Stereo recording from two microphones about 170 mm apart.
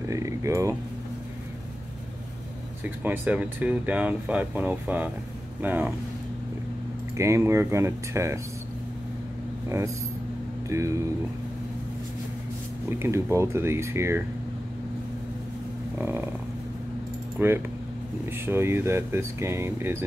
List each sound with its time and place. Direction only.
0.1 s speech: 20° right (ahead or behind)
2.8 s speech: 10° right (ahead or behind)
7.2 s speech: 15° right (ahead or behind)
10.7 s speech: 15° right (ahead or behind)
13.0 s speech: 15° right (ahead or behind)
16.0 s speech: 10° right (ahead or behind)
17.4 s speech: 15° right (ahead or behind)